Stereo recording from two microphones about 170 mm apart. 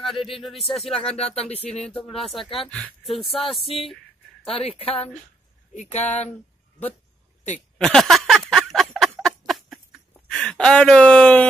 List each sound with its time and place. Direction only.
0.0 s speech: centre (ahead or behind)
1.1 s speech: 35° left (ahead or behind)
1.8 s speech: 5° left (ahead or behind)
4.5 s speech: 35° left (ahead or behind)
7.7 s a sound: centre (ahead or behind)